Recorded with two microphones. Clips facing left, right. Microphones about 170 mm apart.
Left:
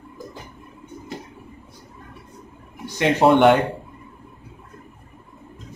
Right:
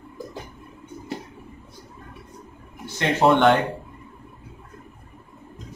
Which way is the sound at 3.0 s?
15° left (ahead or behind).